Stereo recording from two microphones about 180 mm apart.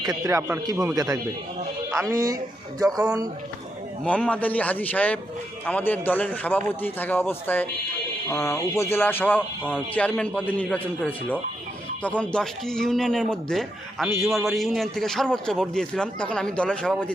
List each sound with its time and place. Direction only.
0.0 s a man's voice: 15° right (ahead or behind)
4.0 s a man's voice: 5° left (ahead or behind)